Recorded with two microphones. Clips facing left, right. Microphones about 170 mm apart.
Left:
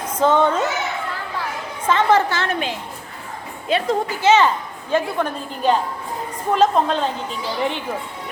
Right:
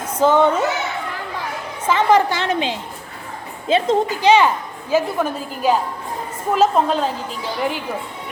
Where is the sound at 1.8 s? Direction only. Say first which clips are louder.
Right 1 dB; 10° right (ahead or behind).